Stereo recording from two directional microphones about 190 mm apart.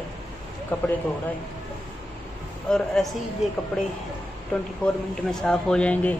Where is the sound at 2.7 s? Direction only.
5° left (ahead or behind).